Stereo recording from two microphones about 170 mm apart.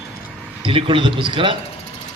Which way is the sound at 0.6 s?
30° right (ahead or behind).